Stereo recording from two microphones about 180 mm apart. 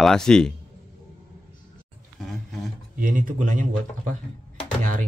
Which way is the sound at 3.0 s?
45° right (ahead or behind).